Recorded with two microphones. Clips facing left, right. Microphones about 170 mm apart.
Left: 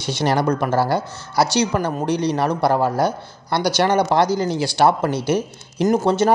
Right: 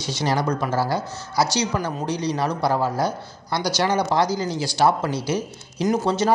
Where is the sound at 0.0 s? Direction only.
60° left (ahead or behind).